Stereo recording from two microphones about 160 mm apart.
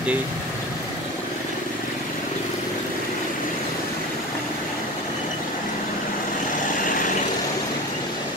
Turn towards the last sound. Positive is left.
turn(degrees=55)  # may be behind; listen again after turning